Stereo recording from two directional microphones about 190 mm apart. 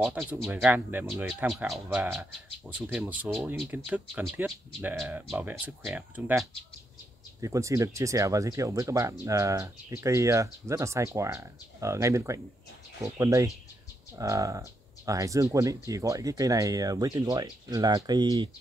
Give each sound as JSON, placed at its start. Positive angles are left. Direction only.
{"t": 0.0, "sound": "speech", "side_deg": -10}
{"t": 7.4, "sound": "speech", "side_deg": -15}